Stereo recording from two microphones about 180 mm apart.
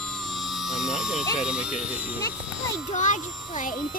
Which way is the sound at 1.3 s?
5° right (ahead or behind).